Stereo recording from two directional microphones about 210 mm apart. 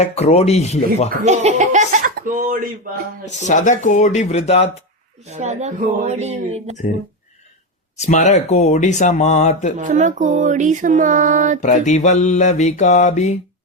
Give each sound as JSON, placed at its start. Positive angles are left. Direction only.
{"t": 0.0, "sound": "speech", "side_deg": 30}
{"t": 1.2, "sound": "speech", "side_deg": -35}
{"t": 3.2, "sound": "speech", "side_deg": 35}
{"t": 5.3, "sound": "speech", "side_deg": -35}
{"t": 7.9, "sound": "speech", "side_deg": 35}
{"t": 9.7, "sound": "speech", "side_deg": -35}
{"t": 11.6, "sound": "speech", "side_deg": 35}